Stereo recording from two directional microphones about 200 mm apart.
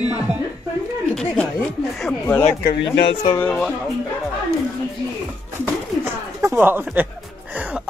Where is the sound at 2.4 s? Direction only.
50° left (ahead or behind).